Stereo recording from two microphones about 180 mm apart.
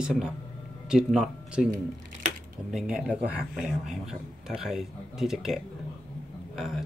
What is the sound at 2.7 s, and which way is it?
A man's voice, centre (ahead or behind).